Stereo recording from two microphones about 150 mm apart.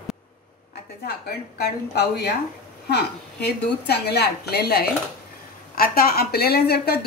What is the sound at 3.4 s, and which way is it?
Speech, 90° left.